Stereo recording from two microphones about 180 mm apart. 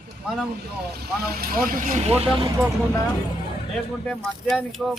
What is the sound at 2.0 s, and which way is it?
Speech, 35° right (ahead or behind).